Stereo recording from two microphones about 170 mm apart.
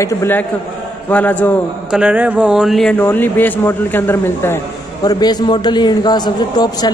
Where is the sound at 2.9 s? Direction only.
10° left (ahead or behind).